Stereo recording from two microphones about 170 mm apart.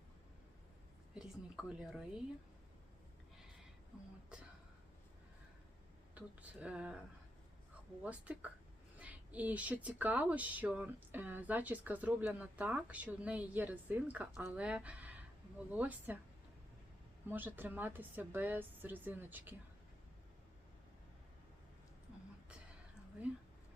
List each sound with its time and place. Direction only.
1.1 s a woman's voice: centre (ahead or behind)
4.3 s a sound: 5° right (ahead or behind)
6.1 s speech: 5° right (ahead or behind)
8.0 s speech: 10° right (ahead or behind)
17.2 s speech: 10° right (ahead or behind)